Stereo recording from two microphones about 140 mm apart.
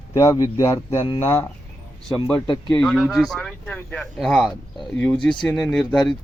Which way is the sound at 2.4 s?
35° left (ahead or behind).